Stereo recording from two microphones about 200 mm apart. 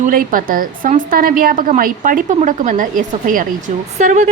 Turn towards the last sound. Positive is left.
turn(degrees=-35)  # may be behind; listen again after turning